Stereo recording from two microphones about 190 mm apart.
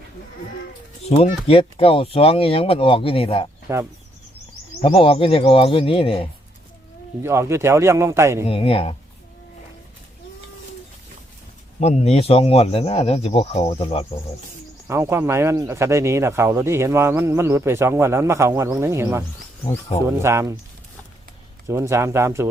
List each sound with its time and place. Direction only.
1.0 s speech: 35° left (ahead or behind)
4.8 s speech: 30° left (ahead or behind)
7.2 s speech: 15° right (ahead or behind)
8.4 s speech: 30° left (ahead or behind)
11.8 s speech: 35° left (ahead or behind)
14.8 s speech: 15° right (ahead or behind)
21.7 s speech: 15° right (ahead or behind)